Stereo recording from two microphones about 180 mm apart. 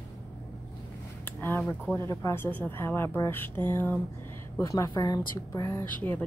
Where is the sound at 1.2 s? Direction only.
10° left (ahead or behind).